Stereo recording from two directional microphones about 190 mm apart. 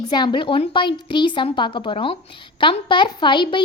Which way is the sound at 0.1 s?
25° left (ahead or behind).